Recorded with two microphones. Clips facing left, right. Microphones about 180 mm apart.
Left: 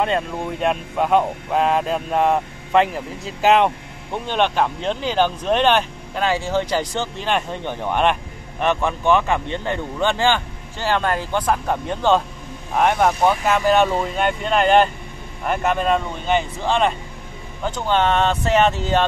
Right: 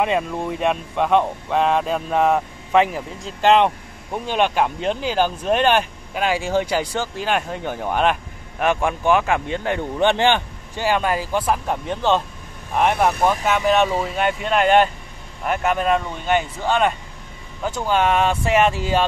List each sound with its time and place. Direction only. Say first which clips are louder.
0.0 s speech: right 1 dB; 5° right (ahead or behind)
9.9 s speech: right 2 dB; 20° right (ahead or behind)